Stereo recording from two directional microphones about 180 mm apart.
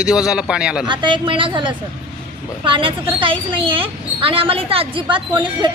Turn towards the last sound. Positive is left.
turn(degrees=-25)  # may be behind; listen again after turning